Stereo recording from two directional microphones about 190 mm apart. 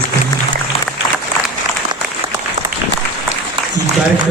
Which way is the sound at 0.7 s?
30° left (ahead or behind).